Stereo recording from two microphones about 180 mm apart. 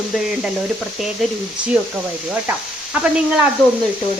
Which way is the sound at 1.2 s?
Centre (ahead or behind).